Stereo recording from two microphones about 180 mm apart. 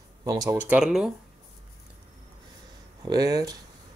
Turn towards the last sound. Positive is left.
turn(degrees=-20)  # may be behind; listen again after turning